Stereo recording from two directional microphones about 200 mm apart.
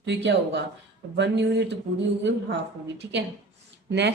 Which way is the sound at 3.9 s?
60° right (ahead or behind).